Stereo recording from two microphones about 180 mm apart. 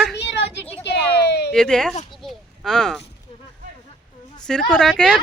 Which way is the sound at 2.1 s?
Centre (ahead or behind).